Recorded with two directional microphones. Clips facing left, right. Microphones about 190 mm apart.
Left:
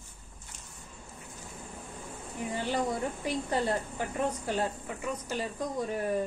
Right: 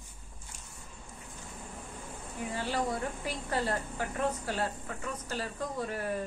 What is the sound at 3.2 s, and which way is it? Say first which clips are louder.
A woman's voice: left 5 dB; 20° left (ahead or behind).